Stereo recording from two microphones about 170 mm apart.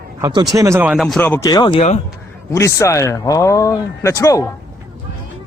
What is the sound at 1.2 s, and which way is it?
Speech, 10° left (ahead or behind).